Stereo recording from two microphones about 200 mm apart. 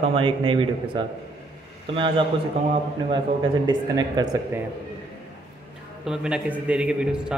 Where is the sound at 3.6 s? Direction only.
20° right (ahead or behind).